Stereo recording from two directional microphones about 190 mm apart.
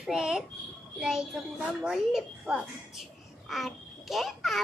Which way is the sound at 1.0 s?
5° right (ahead or behind).